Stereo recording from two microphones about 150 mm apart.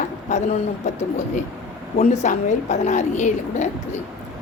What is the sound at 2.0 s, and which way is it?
A woman's voice, 55° left (ahead or behind).